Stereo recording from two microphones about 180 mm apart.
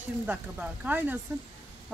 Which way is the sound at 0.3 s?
10° right (ahead or behind).